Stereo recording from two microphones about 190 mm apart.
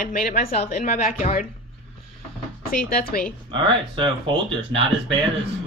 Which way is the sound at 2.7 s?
50° left (ahead or behind).